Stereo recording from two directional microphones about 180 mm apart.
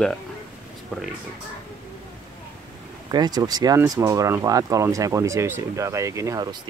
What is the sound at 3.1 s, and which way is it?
Speech, 25° right (ahead or behind).